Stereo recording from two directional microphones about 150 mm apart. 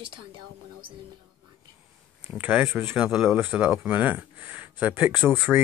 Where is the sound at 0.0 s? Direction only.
35° right (ahead or behind).